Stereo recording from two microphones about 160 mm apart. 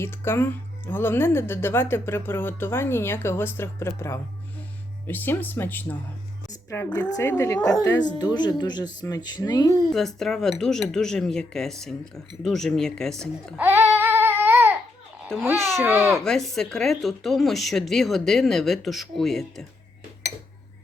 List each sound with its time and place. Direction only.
0.0 s speech: 15° left (ahead or behind)
9.9 s speech: centre (ahead or behind)
13.6 s babbling: 15° right (ahead or behind)
15.3 s speech: 5° left (ahead or behind)